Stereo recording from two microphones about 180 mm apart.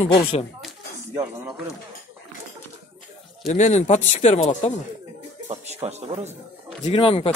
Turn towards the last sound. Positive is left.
turn(degrees=30)  # may be behind; listen again after turning